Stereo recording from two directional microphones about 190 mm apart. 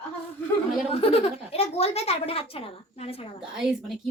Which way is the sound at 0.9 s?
30° left (ahead or behind).